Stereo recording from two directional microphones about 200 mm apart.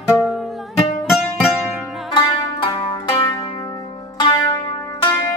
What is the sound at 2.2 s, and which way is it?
Music, 20° left (ahead or behind).